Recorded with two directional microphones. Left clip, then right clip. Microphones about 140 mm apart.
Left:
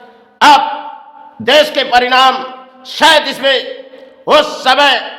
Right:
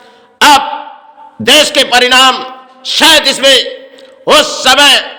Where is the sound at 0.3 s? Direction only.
15° right (ahead or behind).